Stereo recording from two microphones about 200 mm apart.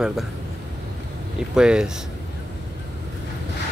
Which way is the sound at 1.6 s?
5° right (ahead or behind).